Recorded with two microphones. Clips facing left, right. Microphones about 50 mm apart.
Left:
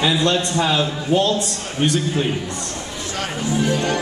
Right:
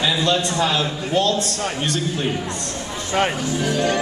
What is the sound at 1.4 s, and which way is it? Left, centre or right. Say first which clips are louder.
Speech: left 1 dB; centre.